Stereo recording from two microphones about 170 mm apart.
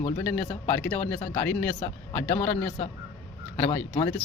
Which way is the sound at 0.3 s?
10° left (ahead or behind).